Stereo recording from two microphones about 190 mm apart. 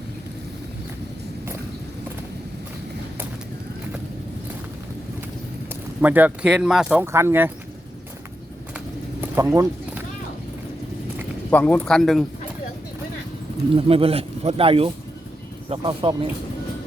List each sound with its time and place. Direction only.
6.0 s speech: 10° right (ahead or behind)
9.2 s a sound: 15° right (ahead or behind)
11.5 s a man's voice: 5° left (ahead or behind)
13.7 s a man's voice: 30° right (ahead or behind)